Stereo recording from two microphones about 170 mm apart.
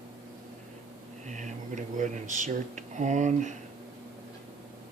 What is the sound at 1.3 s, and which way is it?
Speech, 45° right (ahead or behind).